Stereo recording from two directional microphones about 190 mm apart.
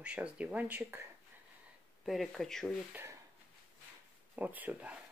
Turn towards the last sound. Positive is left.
turn(degrees=-10)  # may be behind; listen again after turning